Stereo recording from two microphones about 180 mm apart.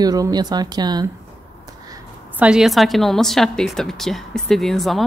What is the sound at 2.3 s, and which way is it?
A woman's voice, 5° right (ahead or behind).